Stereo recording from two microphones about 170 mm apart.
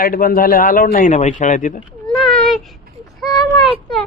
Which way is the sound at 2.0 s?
5° left (ahead or behind).